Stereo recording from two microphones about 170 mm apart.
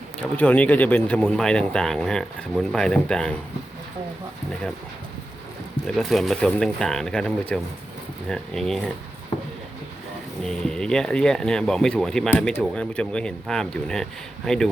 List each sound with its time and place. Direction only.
0.2 s speech: 10° left (ahead or behind)
6.0 s speech: centre (ahead or behind)
10.4 s speech: 5° left (ahead or behind)